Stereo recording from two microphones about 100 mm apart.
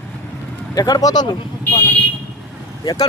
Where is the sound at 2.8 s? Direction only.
40° left (ahead or behind).